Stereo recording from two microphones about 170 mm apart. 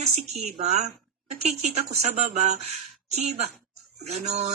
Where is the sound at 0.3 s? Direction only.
40° right (ahead or behind).